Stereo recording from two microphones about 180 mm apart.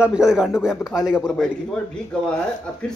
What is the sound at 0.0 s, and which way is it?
Speech, 5° right (ahead or behind).